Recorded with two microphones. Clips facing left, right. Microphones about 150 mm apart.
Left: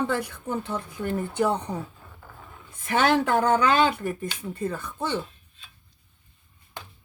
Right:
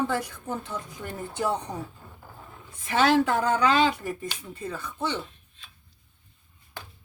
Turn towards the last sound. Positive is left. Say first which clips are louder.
# left 2 dB
turn(degrees=50)  # may be behind; listen again after turning